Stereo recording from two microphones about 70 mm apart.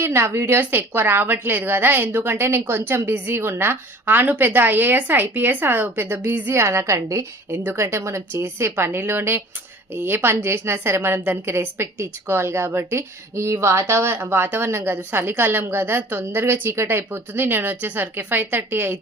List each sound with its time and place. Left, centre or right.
0.0 s a woman's voice: right
6.5 s a woman's voice: right